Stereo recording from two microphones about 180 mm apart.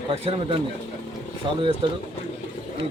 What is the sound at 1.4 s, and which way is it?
Speech, 25° right (ahead or behind).